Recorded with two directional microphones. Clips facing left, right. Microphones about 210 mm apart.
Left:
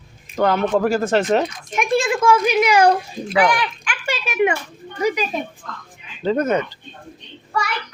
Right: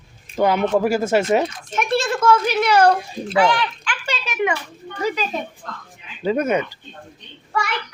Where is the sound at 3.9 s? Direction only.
25° left (ahead or behind).